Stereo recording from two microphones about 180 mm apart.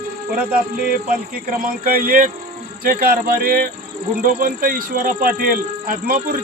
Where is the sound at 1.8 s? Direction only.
50° right (ahead or behind).